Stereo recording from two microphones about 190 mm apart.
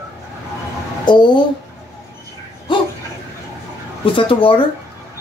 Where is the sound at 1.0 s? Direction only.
25° left (ahead or behind).